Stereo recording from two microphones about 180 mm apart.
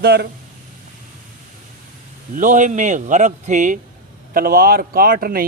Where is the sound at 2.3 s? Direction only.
45° right (ahead or behind).